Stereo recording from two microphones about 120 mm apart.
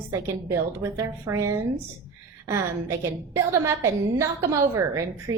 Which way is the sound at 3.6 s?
25° right (ahead or behind).